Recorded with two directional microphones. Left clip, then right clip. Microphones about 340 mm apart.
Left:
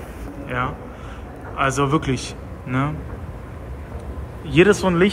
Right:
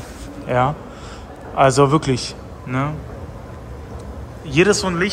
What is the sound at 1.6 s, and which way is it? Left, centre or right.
A man's voice, centre.